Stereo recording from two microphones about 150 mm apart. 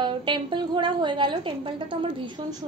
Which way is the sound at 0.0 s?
30° right (ahead or behind).